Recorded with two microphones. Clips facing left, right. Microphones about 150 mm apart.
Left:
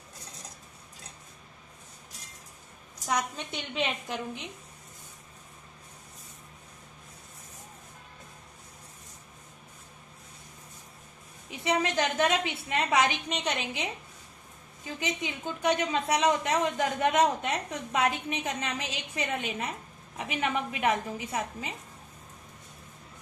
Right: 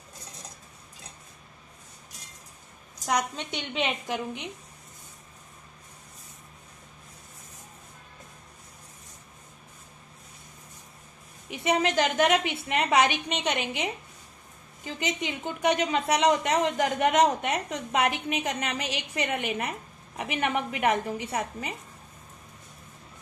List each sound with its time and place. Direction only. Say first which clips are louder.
3.7 s a woman's voice: right 2 dB; 75° right (ahead or behind)
11.6 s a woman's voice: right 3 dB; 85° right
15.0 s a woman's voice: right 3 dB; 85° right; by 21.7 s 65° right (ahead or behind)